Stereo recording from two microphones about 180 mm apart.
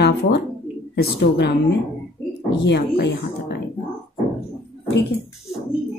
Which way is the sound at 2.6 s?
70° left (ahead or behind).